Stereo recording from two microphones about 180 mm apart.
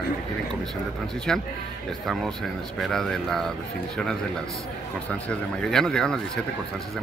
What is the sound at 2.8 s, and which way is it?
Speech, centre (ahead or behind).